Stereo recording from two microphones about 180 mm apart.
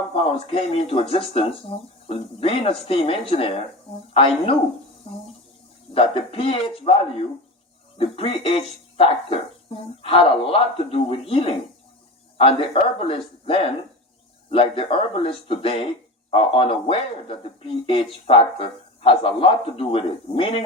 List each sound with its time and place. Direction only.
0.1 s speech: 35° left (ahead or behind)
5.9 s speech: 30° left (ahead or behind)